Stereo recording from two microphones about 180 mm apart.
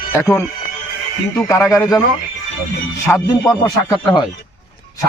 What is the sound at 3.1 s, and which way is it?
Speech, 20° left (ahead or behind).